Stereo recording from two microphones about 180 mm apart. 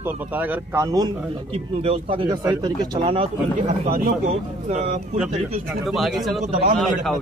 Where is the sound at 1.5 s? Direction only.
30° right (ahead or behind).